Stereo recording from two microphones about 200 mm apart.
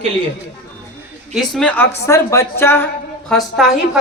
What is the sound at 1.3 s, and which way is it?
A woman's voice, centre (ahead or behind).